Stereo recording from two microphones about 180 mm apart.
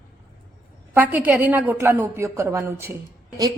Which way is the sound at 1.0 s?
10° right (ahead or behind).